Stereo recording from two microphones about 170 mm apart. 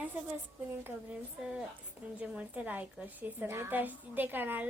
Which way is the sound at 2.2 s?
10° right (ahead or behind).